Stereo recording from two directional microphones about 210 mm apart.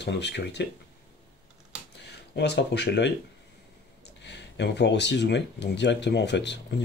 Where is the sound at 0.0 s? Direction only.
55° left (ahead or behind).